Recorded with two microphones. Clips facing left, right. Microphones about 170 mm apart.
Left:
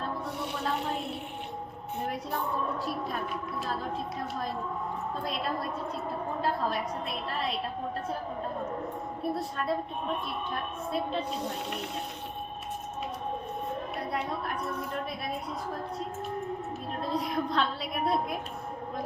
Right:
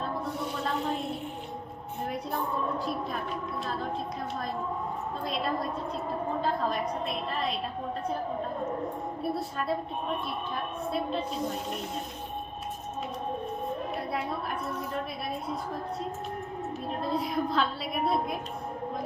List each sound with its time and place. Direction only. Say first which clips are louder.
2.7 s a woman's voice: right 1 dB; centre (ahead or behind)
5.2 s a woman's voice: right 4 dB; centre (ahead or behind)
9.2 s a woman's voice: left 1 dB; centre (ahead or behind)
14.1 s a sound: left 1 dB; centre (ahead or behind)
17.0 s a woman's voice: right 1 dB; centre (ahead or behind)